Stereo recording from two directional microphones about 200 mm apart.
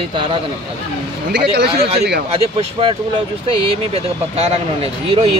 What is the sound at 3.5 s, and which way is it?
Speech, 30° right (ahead or behind).